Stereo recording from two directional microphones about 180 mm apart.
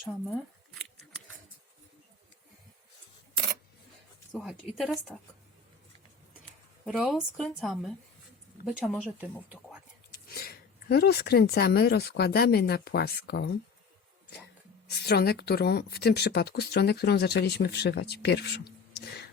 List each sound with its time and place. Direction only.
4.3 s a woman's voice: 5° left (ahead or behind)
6.8 s speech: centre (ahead or behind)
10.1 s speech: 55° left (ahead or behind)
14.8 s speech: 65° left (ahead or behind)